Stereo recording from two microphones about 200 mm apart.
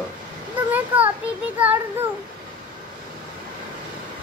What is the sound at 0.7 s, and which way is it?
Speech, 10° right (ahead or behind).